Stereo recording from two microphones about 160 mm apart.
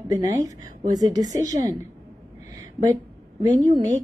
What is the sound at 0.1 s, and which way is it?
Speech, 25° right (ahead or behind).